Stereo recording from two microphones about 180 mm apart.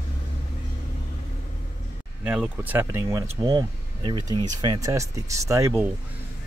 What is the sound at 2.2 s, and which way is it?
Speech, 10° right (ahead or behind).